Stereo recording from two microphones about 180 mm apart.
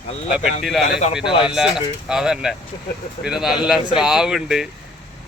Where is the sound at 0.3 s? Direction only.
5° right (ahead or behind).